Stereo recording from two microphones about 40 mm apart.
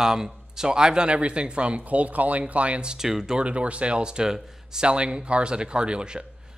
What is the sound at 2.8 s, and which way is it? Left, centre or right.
Speech, centre.